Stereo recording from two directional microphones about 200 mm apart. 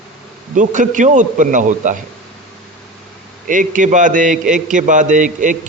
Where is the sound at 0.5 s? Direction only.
40° right (ahead or behind).